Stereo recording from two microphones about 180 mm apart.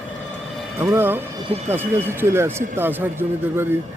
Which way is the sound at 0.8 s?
10° right (ahead or behind).